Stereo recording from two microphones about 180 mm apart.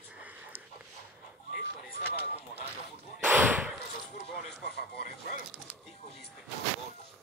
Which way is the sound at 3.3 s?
10° right (ahead or behind).